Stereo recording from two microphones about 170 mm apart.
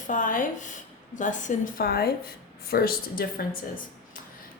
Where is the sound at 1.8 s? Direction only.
65° left (ahead or behind).